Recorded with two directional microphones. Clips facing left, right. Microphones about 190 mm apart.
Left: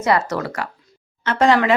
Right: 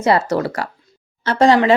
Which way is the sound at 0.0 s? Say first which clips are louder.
Right 3 dB; 30° right (ahead or behind).